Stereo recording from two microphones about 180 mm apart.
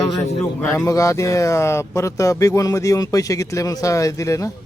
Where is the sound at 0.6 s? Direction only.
15° left (ahead or behind).